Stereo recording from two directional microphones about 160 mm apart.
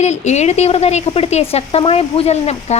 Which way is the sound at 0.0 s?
45° left (ahead or behind).